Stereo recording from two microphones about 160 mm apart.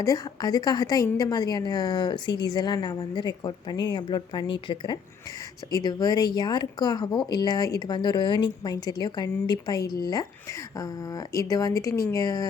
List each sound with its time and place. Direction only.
0.0 s a woman's voice: 25° left (ahead or behind)